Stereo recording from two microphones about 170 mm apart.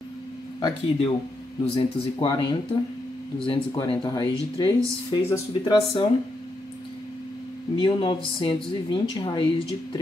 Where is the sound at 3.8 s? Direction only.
25° left (ahead or behind).